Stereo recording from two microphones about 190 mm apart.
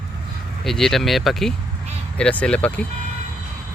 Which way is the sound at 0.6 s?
Centre (ahead or behind).